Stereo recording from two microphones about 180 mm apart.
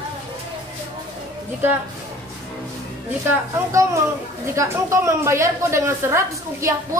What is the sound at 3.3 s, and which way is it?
A woman's voice, 15° right (ahead or behind).